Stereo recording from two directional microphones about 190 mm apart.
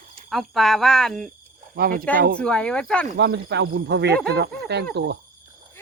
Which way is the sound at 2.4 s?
5° left (ahead or behind).